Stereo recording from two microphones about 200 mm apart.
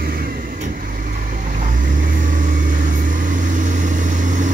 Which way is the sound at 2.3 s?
40° right (ahead or behind).